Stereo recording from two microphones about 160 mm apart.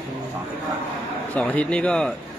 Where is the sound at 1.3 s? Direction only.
10° left (ahead or behind).